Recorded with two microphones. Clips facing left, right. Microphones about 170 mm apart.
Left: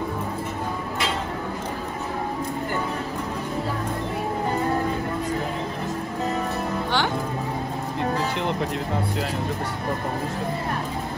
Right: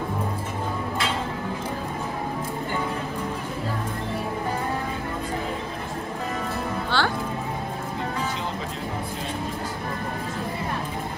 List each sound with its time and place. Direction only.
6.9 s music: 15° left (ahead or behind)